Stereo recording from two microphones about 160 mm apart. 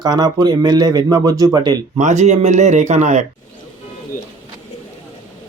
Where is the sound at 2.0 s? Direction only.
45° right (ahead or behind).